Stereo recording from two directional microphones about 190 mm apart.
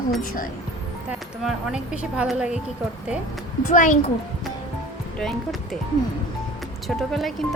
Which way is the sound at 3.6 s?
40° left (ahead or behind).